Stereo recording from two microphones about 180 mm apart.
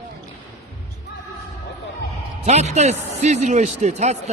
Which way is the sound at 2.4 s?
40° right (ahead or behind).